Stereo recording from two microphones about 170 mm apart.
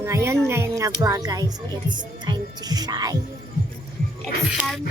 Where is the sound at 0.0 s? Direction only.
15° right (ahead or behind).